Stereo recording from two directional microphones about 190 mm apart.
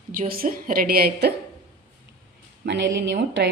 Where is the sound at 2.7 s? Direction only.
70° right (ahead or behind).